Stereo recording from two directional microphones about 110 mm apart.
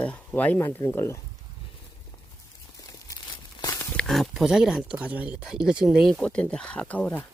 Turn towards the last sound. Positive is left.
turn(degrees=15)  # may be behind; listen again after turning